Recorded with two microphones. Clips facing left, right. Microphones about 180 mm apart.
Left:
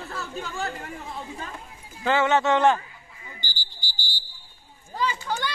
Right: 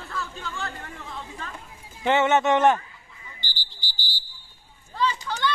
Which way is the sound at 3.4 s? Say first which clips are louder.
Left 1 dB; 45° left (ahead or behind).